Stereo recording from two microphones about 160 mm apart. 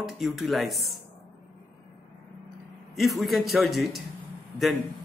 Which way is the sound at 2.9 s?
Centre (ahead or behind).